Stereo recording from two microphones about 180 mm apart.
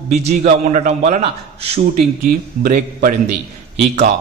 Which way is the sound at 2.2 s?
50° right (ahead or behind).